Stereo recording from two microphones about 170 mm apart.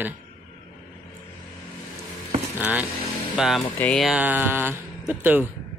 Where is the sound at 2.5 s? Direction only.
10° right (ahead or behind).